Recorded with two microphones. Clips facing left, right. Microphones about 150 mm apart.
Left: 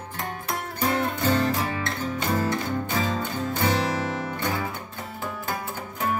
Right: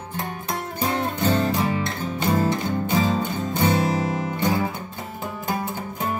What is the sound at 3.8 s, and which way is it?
Music, 25° right (ahead or behind).